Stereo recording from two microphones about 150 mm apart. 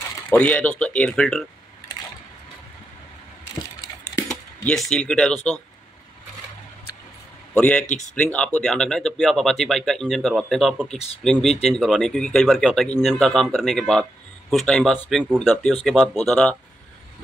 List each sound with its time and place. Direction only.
0.3 s speech: 10° left (ahead or behind)
4.3 s speech: 5° left (ahead or behind)
7.5 s speech: 10° left (ahead or behind)